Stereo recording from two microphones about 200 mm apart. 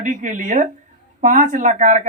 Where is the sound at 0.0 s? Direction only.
40° right (ahead or behind).